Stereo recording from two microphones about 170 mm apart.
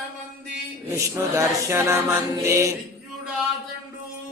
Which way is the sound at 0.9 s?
15° right (ahead or behind).